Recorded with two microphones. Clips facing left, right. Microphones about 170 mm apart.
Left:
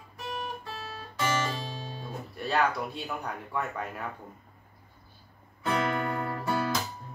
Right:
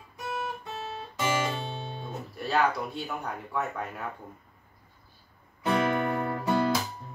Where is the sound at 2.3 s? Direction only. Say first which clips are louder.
Right 1 dB; centre (ahead or behind).